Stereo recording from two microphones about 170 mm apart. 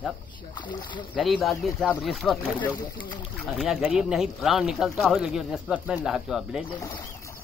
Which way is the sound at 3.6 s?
Centre (ahead or behind).